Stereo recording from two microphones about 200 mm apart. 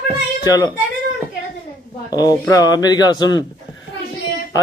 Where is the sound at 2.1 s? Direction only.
20° left (ahead or behind).